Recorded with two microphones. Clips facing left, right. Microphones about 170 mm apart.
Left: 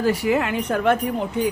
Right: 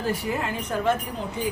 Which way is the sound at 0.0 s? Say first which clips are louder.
Left 7 dB; 80° left.